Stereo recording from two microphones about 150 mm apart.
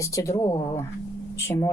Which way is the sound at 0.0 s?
20° left (ahead or behind).